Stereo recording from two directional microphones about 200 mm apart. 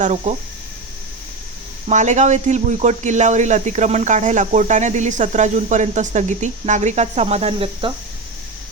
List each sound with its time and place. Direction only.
0.0 s speech: 35° right (ahead or behind)
1.9 s speech: 35° right (ahead or behind)